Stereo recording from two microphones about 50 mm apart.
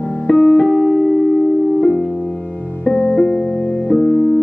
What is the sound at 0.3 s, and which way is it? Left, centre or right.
Music, centre.